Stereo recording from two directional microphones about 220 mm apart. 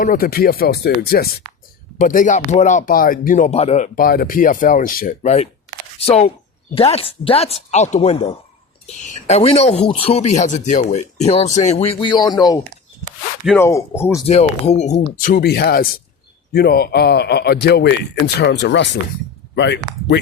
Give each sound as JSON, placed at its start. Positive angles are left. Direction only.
{"t": 0.0, "sound": "a man's voice", "side_deg": 40}
{"t": 13.4, "sound": "speech", "side_deg": 0}
{"t": 13.7, "sound": "speech", "side_deg": 10}
{"t": 14.3, "sound": "a man's voice", "side_deg": 25}